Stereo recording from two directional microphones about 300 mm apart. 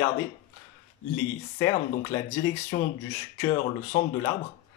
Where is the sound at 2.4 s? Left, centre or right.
Left.